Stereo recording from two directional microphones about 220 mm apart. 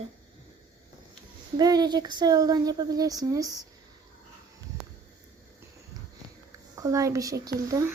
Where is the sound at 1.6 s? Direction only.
20° right (ahead or behind).